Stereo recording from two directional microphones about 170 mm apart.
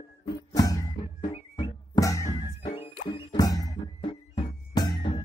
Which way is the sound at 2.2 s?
35° left (ahead or behind).